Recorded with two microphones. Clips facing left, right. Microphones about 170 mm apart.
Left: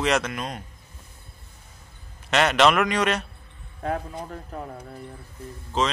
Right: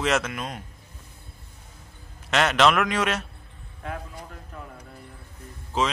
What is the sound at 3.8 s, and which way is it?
Speech, 40° left (ahead or behind).